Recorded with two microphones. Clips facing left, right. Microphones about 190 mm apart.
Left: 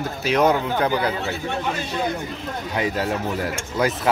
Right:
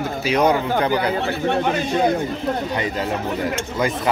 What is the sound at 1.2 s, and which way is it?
Speech, 60° right (ahead or behind).